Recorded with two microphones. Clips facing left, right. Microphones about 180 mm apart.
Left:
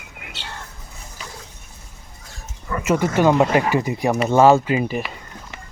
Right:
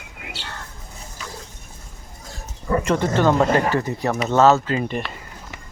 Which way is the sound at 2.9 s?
10° left (ahead or behind).